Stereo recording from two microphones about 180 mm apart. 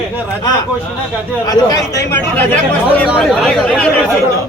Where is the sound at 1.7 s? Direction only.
15° left (ahead or behind).